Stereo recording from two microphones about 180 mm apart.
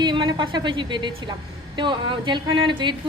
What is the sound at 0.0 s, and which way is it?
A woman's voice, 25° right (ahead or behind).